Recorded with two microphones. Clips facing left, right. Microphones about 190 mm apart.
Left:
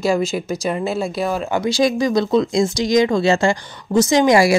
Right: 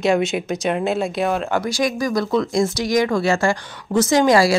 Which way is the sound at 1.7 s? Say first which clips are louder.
Left 4 dB; 25° left (ahead or behind).